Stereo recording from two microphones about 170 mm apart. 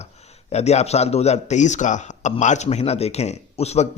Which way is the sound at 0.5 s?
40° left (ahead or behind).